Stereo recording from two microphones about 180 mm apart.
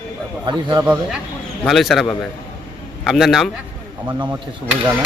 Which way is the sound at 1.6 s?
Centre (ahead or behind).